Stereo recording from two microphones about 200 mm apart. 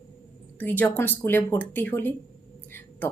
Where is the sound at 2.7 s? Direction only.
10° left (ahead or behind).